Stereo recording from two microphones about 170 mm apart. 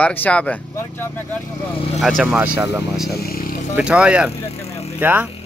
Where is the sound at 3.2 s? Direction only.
60° left (ahead or behind).